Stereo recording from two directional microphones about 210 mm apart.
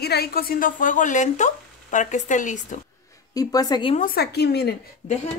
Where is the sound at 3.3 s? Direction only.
20° left (ahead or behind).